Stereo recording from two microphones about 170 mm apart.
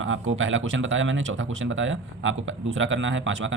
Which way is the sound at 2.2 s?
90° right.